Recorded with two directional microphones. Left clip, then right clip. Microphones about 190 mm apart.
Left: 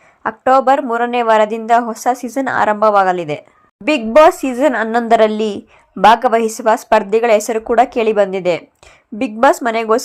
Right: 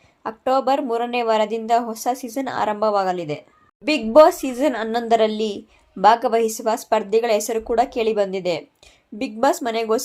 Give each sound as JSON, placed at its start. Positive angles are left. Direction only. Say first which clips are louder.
{"t": 0.2, "sound": "a woman's voice", "louder": "left 8 dB", "side_deg": 25}